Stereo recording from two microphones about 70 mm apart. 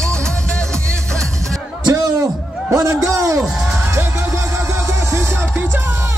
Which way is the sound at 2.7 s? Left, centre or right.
Right.